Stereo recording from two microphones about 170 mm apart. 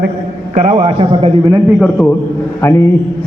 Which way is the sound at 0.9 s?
30° right (ahead or behind).